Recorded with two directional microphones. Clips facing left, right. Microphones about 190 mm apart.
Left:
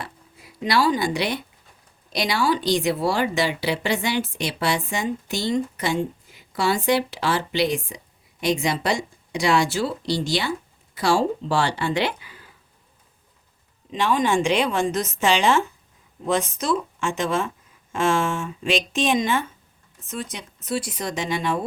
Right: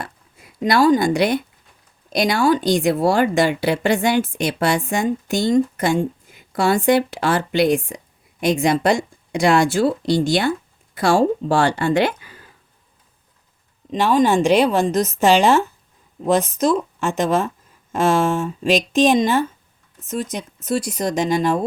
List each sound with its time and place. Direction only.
0.0 s a sound: 50° right (ahead or behind)
2.1 s speech: 50° right (ahead or behind)
13.9 s a woman's voice: 40° right (ahead or behind)